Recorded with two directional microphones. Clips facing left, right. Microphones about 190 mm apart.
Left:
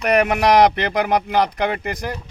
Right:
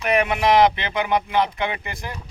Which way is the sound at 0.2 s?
45° left (ahead or behind).